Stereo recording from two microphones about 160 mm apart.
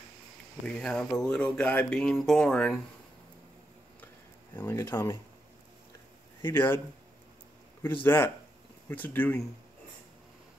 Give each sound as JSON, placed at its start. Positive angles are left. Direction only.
{"t": 0.7, "sound": "speech", "side_deg": 5}
{"t": 4.6, "sound": "speech", "side_deg": 15}
{"t": 6.4, "sound": "speech", "side_deg": 15}
{"t": 7.8, "sound": "speech", "side_deg": 15}